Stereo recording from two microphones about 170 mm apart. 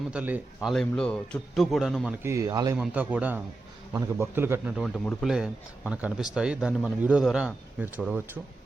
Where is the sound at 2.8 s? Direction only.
10° right (ahead or behind).